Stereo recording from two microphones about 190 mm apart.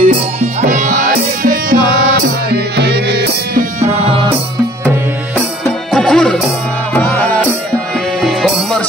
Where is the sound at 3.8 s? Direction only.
35° right (ahead or behind).